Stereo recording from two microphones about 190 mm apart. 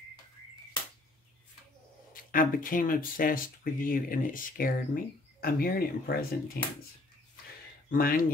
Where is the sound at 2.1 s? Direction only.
45° left (ahead or behind).